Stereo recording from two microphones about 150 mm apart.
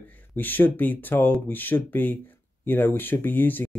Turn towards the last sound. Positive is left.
turn(degrees=10)  # may be behind; listen again after turning